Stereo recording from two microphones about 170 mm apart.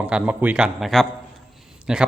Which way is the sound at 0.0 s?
5° right (ahead or behind).